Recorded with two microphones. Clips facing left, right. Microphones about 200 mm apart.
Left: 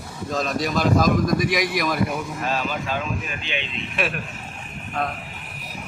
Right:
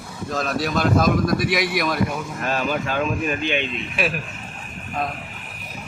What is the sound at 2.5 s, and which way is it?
Speech, 50° right (ahead or behind).